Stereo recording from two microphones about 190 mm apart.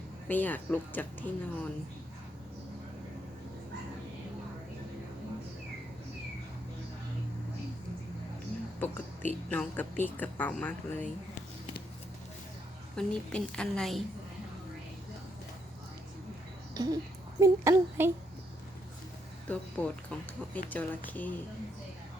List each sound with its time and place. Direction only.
0.3 s speech: 10° left (ahead or behind)
8.8 s speech: 10° left (ahead or behind)
13.0 s a woman's voice: 5° left (ahead or behind)
16.7 s speech: 20° right (ahead or behind)
19.5 s speech: 5° left (ahead or behind)